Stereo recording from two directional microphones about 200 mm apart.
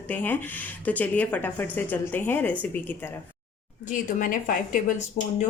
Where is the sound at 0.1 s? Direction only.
10° left (ahead or behind).